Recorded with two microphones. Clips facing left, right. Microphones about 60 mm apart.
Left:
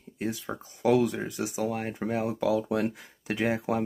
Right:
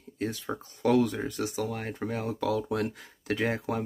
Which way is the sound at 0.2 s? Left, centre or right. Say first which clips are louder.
Even; centre.